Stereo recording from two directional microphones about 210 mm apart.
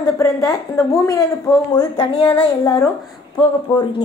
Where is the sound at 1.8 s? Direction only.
25° left (ahead or behind).